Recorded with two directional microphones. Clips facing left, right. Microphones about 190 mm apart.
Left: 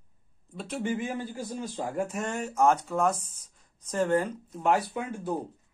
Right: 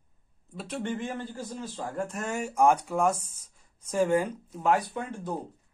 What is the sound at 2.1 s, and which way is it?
Speech, 5° right (ahead or behind).